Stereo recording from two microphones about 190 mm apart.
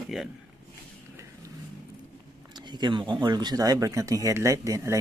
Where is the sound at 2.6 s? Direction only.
25° right (ahead or behind).